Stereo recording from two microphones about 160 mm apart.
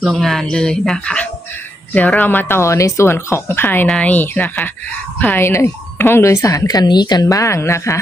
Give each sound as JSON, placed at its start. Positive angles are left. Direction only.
{"t": 0.0, "sound": "speech", "side_deg": 0}